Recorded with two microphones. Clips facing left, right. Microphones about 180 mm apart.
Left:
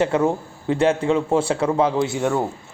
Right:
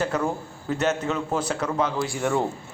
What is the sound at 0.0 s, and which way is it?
A man's voice, 25° left (ahead or behind).